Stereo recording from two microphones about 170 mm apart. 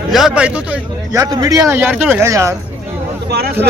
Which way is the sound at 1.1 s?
20° right (ahead or behind).